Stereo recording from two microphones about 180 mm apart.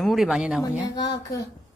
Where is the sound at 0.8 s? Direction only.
20° left (ahead or behind).